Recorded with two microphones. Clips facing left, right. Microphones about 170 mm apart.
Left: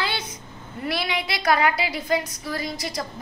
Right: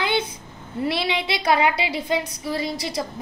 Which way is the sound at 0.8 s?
30° right (ahead or behind).